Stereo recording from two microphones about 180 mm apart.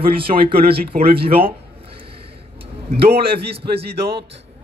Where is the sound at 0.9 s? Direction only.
55° right (ahead or behind).